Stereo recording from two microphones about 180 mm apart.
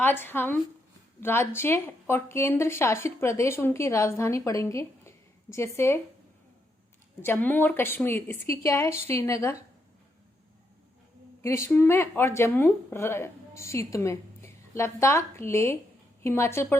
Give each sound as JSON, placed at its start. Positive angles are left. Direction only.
{"t": 0.0, "sound": "a woman's voice", "side_deg": 10}
{"t": 7.2, "sound": "a woman's voice", "side_deg": 10}
{"t": 11.4, "sound": "a woman's voice", "side_deg": 15}